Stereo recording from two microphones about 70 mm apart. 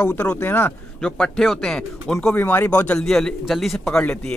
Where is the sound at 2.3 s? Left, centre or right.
Left.